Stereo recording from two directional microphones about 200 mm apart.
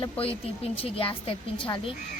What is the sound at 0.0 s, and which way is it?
A child's voice, 30° left (ahead or behind).